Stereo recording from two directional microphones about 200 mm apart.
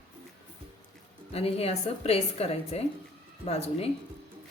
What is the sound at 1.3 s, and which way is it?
A woman's voice, 30° left (ahead or behind).